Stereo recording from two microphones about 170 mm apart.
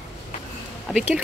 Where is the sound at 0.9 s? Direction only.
5° right (ahead or behind).